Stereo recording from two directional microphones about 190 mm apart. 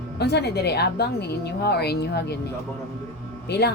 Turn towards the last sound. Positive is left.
turn(degrees=60)  # may be behind; listen again after turning